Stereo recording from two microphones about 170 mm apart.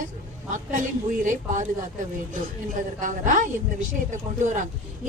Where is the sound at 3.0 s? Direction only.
50° right (ahead or behind).